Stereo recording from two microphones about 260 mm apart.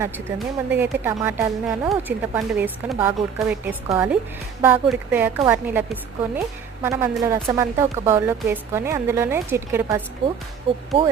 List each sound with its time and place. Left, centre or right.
0.3 s speech: centre
10.7 s speech: right